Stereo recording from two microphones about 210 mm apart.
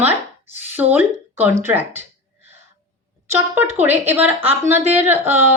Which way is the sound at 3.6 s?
10° right (ahead or behind).